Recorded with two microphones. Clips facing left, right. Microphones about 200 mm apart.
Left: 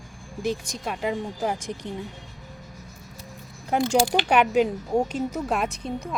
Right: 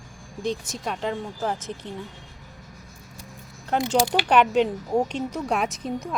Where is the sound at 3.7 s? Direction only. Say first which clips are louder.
Left 1 dB; 10° left (ahead or behind).